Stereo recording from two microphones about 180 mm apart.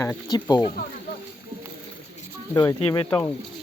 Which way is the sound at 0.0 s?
20° left (ahead or behind).